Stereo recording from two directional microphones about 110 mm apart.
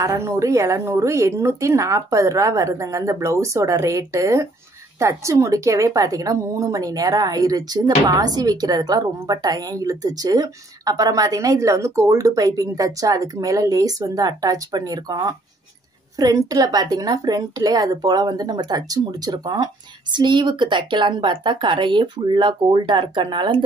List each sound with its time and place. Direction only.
0.0 s a woman's voice: 25° right (ahead or behind); by 23.6 s 45° right (ahead or behind)